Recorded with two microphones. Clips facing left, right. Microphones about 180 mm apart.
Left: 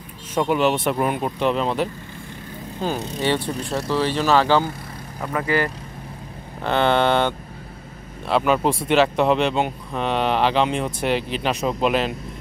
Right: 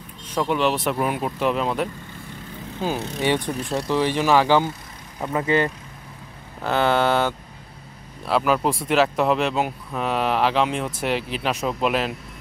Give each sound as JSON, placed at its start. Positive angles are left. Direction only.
{"t": 0.3, "sound": "speech", "side_deg": 5}
{"t": 6.6, "sound": "speech", "side_deg": -5}